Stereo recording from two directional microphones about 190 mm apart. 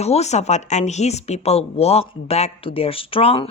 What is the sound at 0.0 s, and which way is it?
Speech, 35° left (ahead or behind).